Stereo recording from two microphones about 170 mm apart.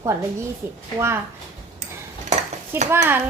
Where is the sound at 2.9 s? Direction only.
10° right (ahead or behind).